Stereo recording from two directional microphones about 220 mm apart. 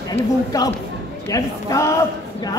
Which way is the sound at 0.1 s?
15° left (ahead or behind).